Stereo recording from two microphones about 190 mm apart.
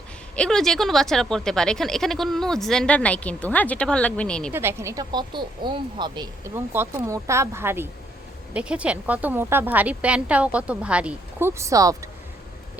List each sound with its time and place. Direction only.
0.3 s speech: 5° left (ahead or behind)
4.5 s a woman's voice: 15° right (ahead or behind)